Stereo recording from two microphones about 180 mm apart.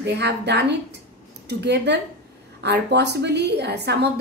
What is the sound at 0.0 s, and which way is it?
A woman's voice, 70° right (ahead or behind).